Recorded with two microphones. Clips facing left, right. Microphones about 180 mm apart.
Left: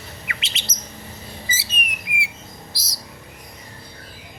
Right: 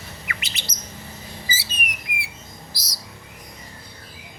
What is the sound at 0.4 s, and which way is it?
Bird, 25° left (ahead or behind).